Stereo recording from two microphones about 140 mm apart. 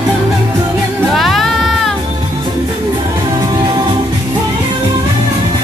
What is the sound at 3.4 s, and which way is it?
Music, 35° right (ahead or behind).